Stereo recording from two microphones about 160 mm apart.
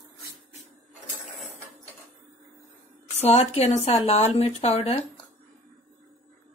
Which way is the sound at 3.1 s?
40° left (ahead or behind).